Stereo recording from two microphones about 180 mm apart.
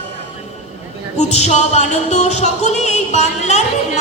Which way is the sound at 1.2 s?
40° left (ahead or behind).